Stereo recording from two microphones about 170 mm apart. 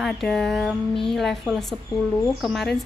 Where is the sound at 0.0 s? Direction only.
Centre (ahead or behind).